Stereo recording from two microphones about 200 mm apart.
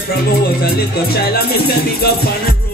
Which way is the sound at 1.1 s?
50° left (ahead or behind).